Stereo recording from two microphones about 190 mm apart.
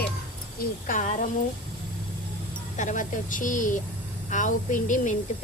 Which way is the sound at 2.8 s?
40° left (ahead or behind).